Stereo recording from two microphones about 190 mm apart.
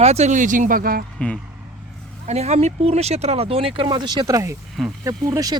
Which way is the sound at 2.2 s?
35° right (ahead or behind).